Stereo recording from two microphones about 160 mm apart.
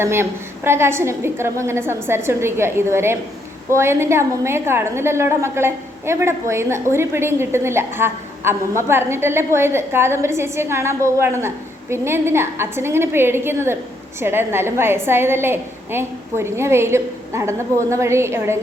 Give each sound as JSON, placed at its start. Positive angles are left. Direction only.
{"t": 0.0, "sound": "a woman's voice", "side_deg": -15}